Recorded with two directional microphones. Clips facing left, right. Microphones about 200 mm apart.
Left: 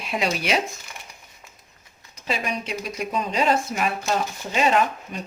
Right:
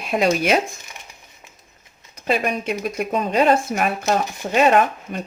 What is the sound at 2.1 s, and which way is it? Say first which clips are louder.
Speech: right 6 dB; 55° right (ahead or behind).